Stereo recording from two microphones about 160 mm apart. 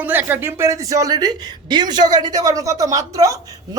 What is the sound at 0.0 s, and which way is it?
A man's voice, 10° right (ahead or behind).